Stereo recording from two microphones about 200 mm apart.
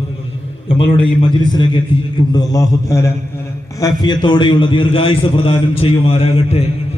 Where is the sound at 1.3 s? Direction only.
20° left (ahead or behind).